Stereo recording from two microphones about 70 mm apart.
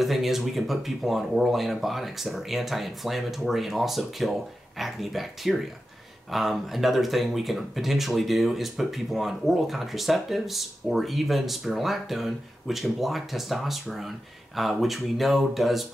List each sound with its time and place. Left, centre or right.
0.0 s speech: centre